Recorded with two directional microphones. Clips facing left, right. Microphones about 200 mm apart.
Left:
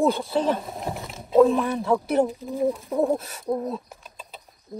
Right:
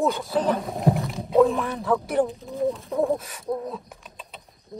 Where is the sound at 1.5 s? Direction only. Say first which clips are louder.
Left 4 dB; 15° left (ahead or behind).